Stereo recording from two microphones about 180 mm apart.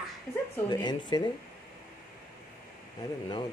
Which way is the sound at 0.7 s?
25° left (ahead or behind).